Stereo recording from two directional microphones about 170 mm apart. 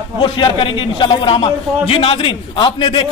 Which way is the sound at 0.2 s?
30° left (ahead or behind).